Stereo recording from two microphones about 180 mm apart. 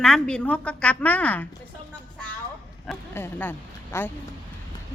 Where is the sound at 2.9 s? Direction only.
10° left (ahead or behind).